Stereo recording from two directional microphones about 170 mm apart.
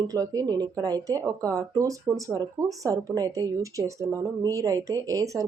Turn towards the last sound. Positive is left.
turn(degrees=-20)  # may be behind; listen again after turning